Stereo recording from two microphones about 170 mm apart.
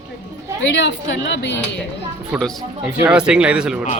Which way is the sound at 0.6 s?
90° left.